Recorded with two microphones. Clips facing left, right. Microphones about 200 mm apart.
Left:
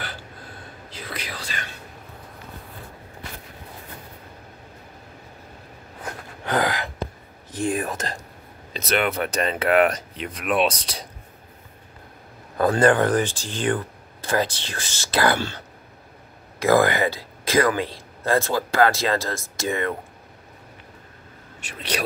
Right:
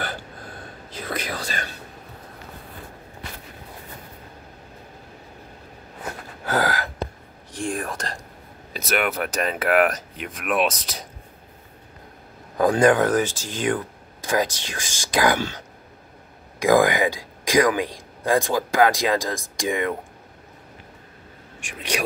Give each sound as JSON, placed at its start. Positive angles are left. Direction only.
{"t": 0.9, "sound": "whispering", "side_deg": -50}
{"t": 6.4, "sound": "gasp", "side_deg": -5}
{"t": 7.5, "sound": "whispering", "side_deg": 5}
{"t": 8.7, "sound": "speech", "side_deg": -5}
{"t": 12.5, "sound": "a man's voice", "side_deg": -10}
{"t": 21.5, "sound": "speech", "side_deg": -10}